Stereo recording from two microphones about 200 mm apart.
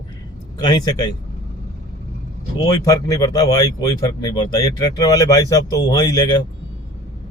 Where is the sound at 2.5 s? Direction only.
20° left (ahead or behind).